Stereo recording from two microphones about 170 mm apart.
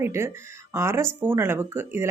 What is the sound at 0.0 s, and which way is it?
Speech, 15° right (ahead or behind).